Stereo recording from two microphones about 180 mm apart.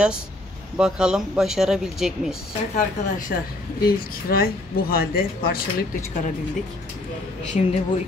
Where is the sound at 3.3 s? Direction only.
60° left (ahead or behind).